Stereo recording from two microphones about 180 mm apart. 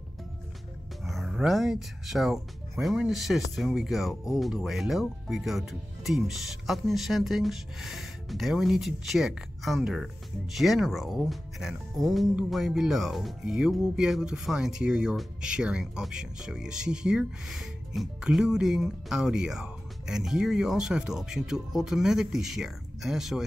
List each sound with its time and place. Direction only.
1.0 s speech: centre (ahead or behind)